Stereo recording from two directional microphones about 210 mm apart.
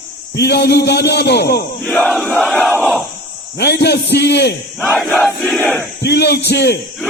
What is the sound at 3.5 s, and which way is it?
A man's voice, 50° left (ahead or behind).